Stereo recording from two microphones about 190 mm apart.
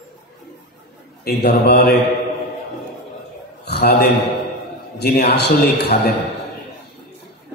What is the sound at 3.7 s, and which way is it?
A man's voice, 60° left (ahead or behind).